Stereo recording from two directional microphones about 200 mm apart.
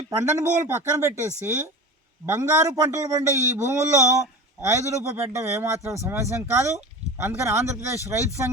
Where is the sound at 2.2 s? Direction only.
15° right (ahead or behind).